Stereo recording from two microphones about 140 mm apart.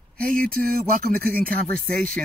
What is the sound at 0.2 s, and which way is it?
Speech, 90° right.